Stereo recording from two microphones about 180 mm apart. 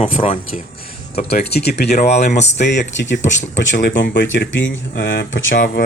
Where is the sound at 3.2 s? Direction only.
40° left (ahead or behind).